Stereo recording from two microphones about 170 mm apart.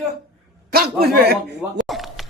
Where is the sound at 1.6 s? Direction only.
Centre (ahead or behind).